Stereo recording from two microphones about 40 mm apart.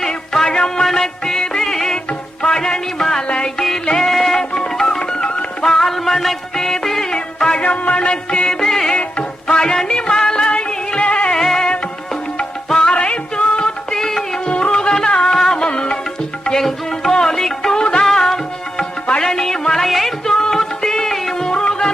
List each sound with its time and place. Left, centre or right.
0.1 s music: centre
5.7 s music: centre
7.6 s music: left
8.6 s music: centre
9.0 s music: left
11.4 s music: centre
12.9 s music: left
14.0 s music: centre
14.4 s music: left
15.5 s music: left
16.5 s music: centre
19.2 s a sound: centre
20.2 s music: centre
21.4 s music: centre